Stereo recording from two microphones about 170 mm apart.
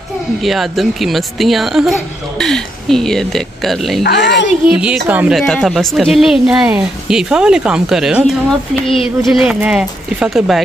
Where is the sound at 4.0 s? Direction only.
85° left.